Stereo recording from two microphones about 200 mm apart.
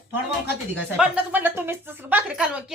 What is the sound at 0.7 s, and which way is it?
Speech, 5° right (ahead or behind).